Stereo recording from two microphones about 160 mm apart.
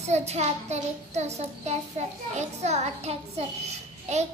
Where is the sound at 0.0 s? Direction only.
40° right (ahead or behind).